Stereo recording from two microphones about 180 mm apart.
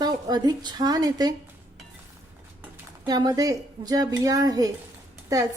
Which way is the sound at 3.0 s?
20° right (ahead or behind).